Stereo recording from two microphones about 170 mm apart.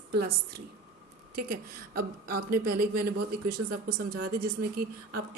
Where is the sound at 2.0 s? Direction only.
60° right (ahead or behind).